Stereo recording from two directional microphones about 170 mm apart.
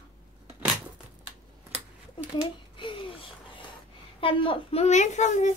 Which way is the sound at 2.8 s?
30° left (ahead or behind).